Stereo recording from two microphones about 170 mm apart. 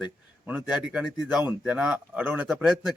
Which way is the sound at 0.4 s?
5° right (ahead or behind).